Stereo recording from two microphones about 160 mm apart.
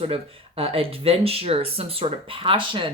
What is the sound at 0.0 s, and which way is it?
Speech, 35° right (ahead or behind).